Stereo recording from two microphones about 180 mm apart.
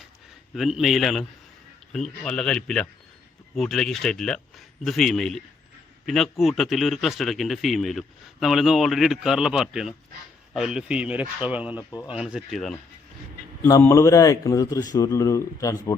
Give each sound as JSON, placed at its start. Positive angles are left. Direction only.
{"t": 0.5, "sound": "a man's voice", "side_deg": 0}
{"t": 11.8, "sound": "speech", "side_deg": 20}
{"t": 12.0, "sound": "a man's voice", "side_deg": -5}
{"t": 13.6, "sound": "a man's voice", "side_deg": 15}